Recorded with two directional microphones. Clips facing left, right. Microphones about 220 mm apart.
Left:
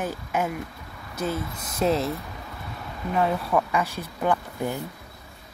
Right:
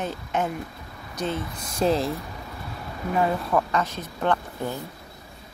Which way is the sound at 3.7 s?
10° left (ahead or behind).